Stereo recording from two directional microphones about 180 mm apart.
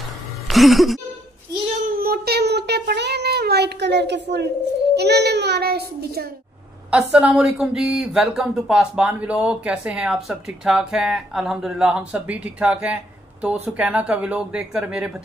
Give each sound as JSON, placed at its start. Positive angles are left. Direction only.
{"t": 0.5, "sound": "speech", "side_deg": 0}
{"t": 1.9, "sound": "speech", "side_deg": -55}
{"t": 6.9, "sound": "speech", "side_deg": -5}